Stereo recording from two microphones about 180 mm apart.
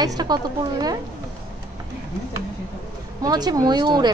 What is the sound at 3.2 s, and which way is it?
Speech, 20° right (ahead or behind).